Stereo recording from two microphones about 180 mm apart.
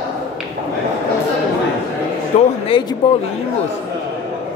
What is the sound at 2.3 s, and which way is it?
Speech, 35° left (ahead or behind).